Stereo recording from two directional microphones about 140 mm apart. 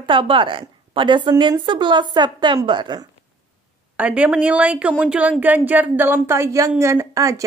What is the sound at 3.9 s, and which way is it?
Speech, 10° right (ahead or behind).